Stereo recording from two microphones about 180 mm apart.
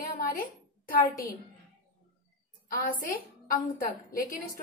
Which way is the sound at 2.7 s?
50° left (ahead or behind).